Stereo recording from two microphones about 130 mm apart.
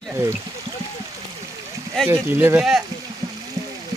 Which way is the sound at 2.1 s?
15° right (ahead or behind).